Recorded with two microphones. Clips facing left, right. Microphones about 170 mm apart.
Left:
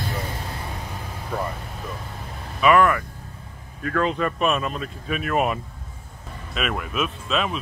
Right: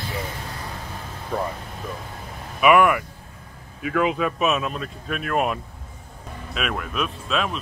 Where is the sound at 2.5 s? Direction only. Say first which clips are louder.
Right 1 dB; 10° right (ahead or behind).